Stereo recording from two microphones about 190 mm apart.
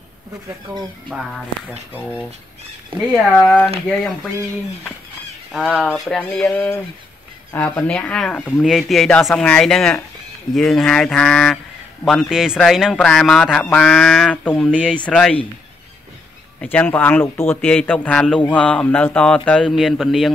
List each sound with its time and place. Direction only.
2.0 s speech: 10° left (ahead or behind)
5.5 s speech: centre (ahead or behind)
16.6 s speech: 10° left (ahead or behind)